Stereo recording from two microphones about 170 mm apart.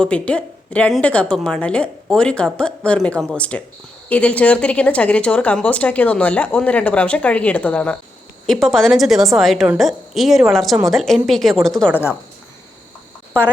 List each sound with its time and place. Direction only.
0.0 s a woman's voice: 5° left (ahead or behind)
13.3 s speech: 10° left (ahead or behind)